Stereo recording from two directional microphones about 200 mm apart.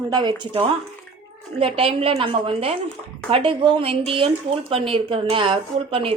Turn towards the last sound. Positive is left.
turn(degrees=-25)  # may be behind; listen again after turning